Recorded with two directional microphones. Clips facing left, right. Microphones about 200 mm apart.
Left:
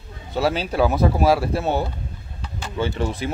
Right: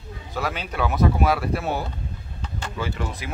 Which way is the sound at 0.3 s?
30° left (ahead or behind).